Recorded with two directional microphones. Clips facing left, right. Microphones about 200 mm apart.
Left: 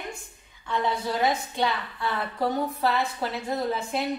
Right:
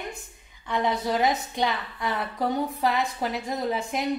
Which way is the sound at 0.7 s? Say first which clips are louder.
Right 2 dB; 20° right (ahead or behind).